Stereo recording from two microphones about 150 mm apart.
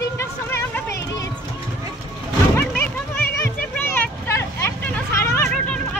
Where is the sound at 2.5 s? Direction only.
15° left (ahead or behind).